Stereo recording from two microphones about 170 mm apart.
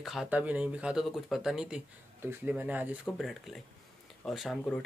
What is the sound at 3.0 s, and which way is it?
Speech, centre (ahead or behind).